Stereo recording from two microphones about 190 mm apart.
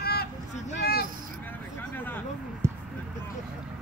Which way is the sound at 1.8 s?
10° left (ahead or behind).